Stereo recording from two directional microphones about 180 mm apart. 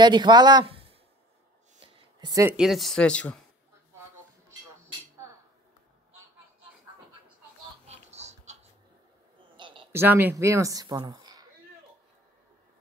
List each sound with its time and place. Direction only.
0.0 s speech: 25° right (ahead or behind)
2.1 s speech: 20° right (ahead or behind)
2.5 s speech: centre (ahead or behind)
7.8 s music: 35° right (ahead or behind)
9.6 s a sound: 25° right (ahead or behind)
9.9 s speech: 10° right (ahead or behind)